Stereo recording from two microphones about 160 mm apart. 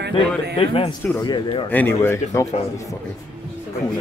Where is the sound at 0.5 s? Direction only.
35° left (ahead or behind).